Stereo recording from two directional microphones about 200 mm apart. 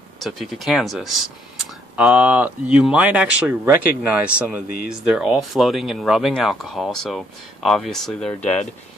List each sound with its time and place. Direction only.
0.2 s speech: centre (ahead or behind)